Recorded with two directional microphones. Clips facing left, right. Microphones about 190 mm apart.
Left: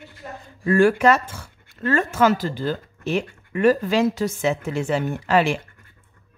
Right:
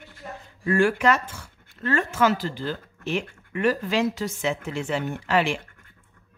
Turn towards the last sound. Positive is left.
turn(degrees=40)  # may be behind; listen again after turning